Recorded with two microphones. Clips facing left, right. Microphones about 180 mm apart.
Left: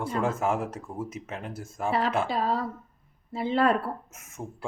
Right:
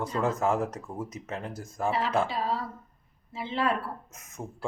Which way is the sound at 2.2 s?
45° left (ahead or behind).